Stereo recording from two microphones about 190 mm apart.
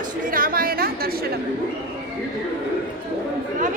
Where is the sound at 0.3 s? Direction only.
50° right (ahead or behind).